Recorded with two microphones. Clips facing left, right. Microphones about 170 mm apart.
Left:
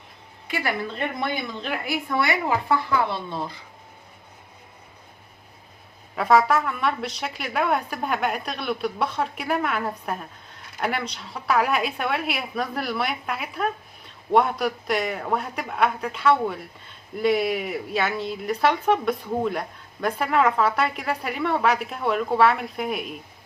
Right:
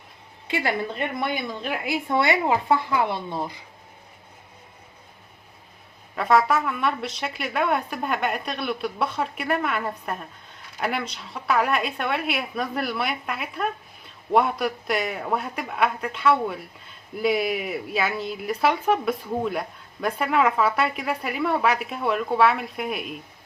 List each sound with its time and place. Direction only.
0.4 s a woman's voice: 25° right (ahead or behind)
1.2 s speech: 15° right (ahead or behind)
6.1 s a man's voice: centre (ahead or behind)